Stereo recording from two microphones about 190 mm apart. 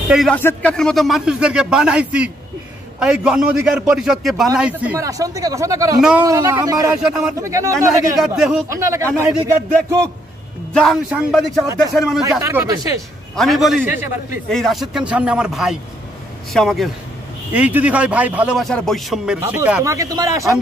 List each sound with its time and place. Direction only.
0.1 s a man's voice: centre (ahead or behind); by 5.9 s 15° right (ahead or behind)
5.9 s a man's voice: 5° right (ahead or behind)
6.2 s a man's voice: 15° right (ahead or behind)
7.0 s a man's voice: centre (ahead or behind)
7.3 s a man's voice: 15° right (ahead or behind)
8.2 s a man's voice: 5° right (ahead or behind)
8.6 s a man's voice: 15° right (ahead or behind)
10.7 s a man's voice: centre (ahead or behind)
11.6 s a man's voice: 15° right (ahead or behind)
11.9 s a man's voice: centre (ahead or behind)
12.4 s a man's voice: 15° right (ahead or behind)
13.4 s a man's voice: centre (ahead or behind); by 20.4 s 20° right (ahead or behind)